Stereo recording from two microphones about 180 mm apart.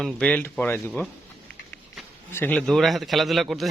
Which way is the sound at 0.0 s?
5° left (ahead or behind).